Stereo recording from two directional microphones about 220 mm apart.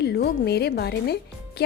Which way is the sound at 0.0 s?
45° left (ahead or behind).